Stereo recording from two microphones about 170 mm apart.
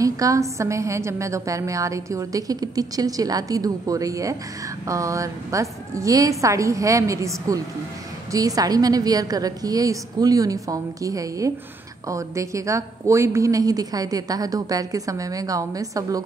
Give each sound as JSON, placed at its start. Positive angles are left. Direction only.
{"t": 0.0, "sound": "a woman's voice", "side_deg": -20}